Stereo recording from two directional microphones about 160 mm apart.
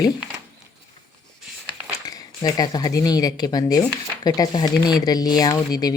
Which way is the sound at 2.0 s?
25° left (ahead or behind).